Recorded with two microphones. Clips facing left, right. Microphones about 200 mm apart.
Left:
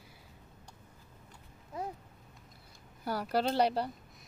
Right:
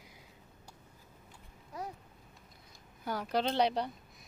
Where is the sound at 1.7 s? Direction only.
25° left (ahead or behind).